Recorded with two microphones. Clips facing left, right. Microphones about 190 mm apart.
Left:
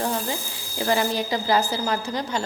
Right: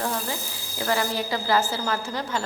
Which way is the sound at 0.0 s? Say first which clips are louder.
Left 2 dB; 20° left (ahead or behind).